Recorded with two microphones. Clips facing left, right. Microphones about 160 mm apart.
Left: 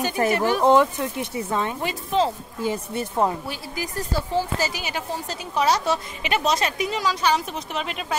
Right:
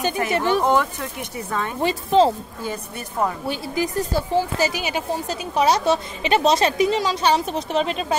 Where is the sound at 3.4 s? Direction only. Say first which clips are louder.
Right 7 dB; 25° right (ahead or behind).